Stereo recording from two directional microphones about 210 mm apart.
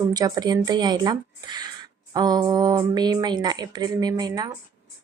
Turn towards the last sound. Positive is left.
turn(degrees=-20)  # may be behind; listen again after turning